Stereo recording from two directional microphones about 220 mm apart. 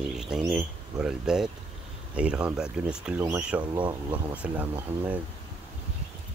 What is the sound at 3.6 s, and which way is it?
Speech, 20° right (ahead or behind).